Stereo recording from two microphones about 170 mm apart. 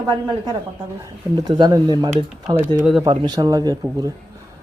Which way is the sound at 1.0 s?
25° right (ahead or behind).